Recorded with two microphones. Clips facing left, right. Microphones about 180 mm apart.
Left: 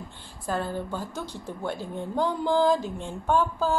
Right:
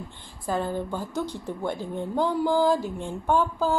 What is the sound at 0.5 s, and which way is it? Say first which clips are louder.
A woman's voice: right 2 dB; 15° right (ahead or behind).